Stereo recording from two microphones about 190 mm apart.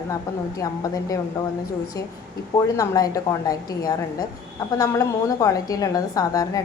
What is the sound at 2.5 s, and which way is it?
A woman's voice, 20° left (ahead or behind).